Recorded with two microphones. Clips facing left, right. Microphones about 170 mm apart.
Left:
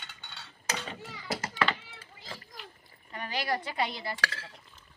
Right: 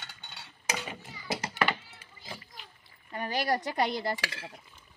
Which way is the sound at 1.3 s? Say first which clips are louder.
Even; 20° right (ahead or behind).